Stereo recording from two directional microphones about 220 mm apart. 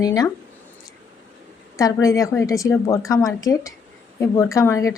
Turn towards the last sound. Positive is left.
turn(degrees=15)  # may be behind; listen again after turning